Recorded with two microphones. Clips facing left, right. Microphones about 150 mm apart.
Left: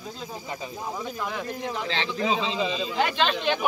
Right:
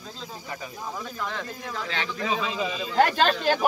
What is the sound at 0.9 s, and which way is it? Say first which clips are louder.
Speech: left 1 dB; 15° left (ahead or behind).